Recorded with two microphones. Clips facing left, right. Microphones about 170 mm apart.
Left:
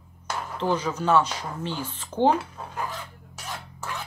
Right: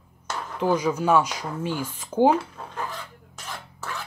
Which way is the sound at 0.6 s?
10° right (ahead or behind).